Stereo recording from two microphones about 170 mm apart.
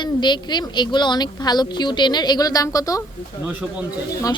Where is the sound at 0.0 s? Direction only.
25° left (ahead or behind).